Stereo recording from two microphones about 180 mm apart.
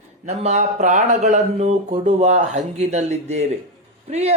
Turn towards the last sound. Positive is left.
turn(degrees=-35)  # may be behind; listen again after turning